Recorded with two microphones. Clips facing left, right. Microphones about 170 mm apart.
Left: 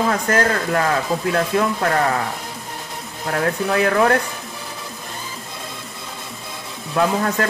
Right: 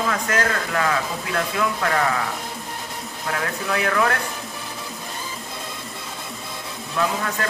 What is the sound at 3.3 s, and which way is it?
Speech, 40° left (ahead or behind).